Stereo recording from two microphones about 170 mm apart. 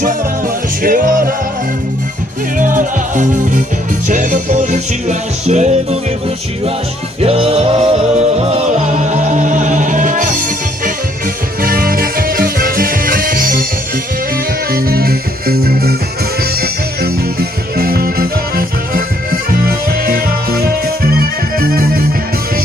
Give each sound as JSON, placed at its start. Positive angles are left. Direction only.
{"t": 0.8, "sound": "music", "side_deg": -55}
{"t": 2.6, "sound": "music", "side_deg": -50}
{"t": 7.2, "sound": "music", "side_deg": -35}
{"t": 11.6, "sound": "music", "side_deg": -60}
{"t": 14.7, "sound": "music", "side_deg": -60}